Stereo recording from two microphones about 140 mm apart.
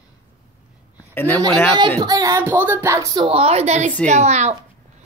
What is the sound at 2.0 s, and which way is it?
Music, 25° right (ahead or behind).